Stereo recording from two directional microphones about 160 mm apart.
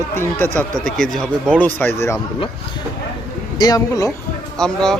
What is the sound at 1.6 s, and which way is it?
Speech, 10° left (ahead or behind).